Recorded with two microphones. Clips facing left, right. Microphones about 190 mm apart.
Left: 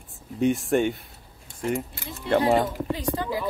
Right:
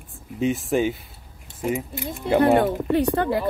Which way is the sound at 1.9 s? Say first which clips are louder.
Right 2 dB; 15° right (ahead or behind).